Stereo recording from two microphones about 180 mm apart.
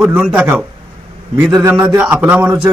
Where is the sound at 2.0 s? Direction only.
10° right (ahead or behind).